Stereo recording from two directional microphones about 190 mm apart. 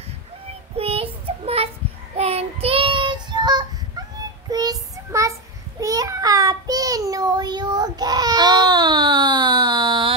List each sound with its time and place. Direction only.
0.7 s child singing: 30° right (ahead or behind)